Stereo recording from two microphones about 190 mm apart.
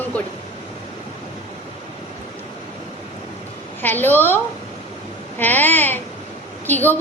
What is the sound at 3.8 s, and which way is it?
Speech, 10° left (ahead or behind).